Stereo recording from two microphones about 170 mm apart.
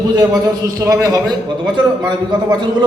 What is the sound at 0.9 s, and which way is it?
A man's voice, 20° right (ahead or behind).